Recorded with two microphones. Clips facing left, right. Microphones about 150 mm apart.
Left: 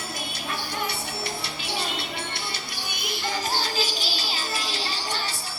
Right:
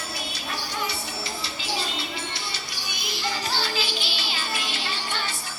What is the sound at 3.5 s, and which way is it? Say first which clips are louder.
Music: left 1 dB; 40° left (ahead or behind).